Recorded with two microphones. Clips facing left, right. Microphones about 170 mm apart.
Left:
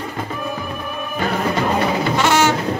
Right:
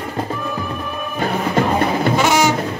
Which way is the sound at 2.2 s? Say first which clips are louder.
Left 1 dB; 10° right (ahead or behind).